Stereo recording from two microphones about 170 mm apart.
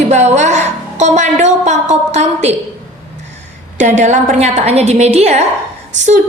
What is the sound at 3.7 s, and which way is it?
A woman's voice, 45° right (ahead or behind).